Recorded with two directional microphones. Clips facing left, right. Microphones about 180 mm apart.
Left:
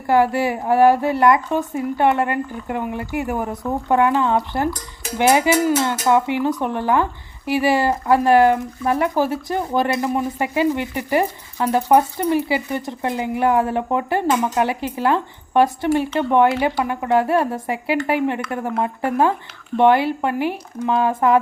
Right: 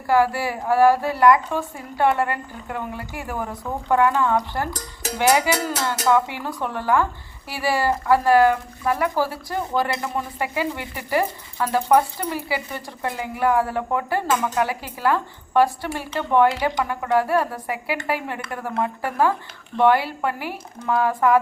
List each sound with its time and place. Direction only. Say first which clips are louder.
0.1 s speech: left 3 dB; 20° left (ahead or behind)